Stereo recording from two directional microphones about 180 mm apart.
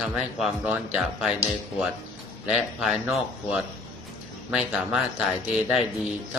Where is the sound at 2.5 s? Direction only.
Centre (ahead or behind).